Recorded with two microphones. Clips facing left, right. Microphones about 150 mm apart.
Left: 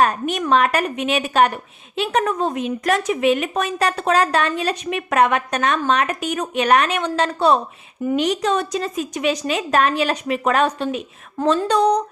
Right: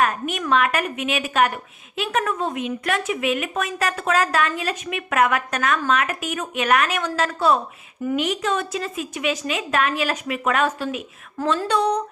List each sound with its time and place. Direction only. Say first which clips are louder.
0.0 s speech: left 4 dB; 35° left (ahead or behind)